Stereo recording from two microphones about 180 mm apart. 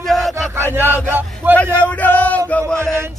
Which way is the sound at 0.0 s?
Centre (ahead or behind).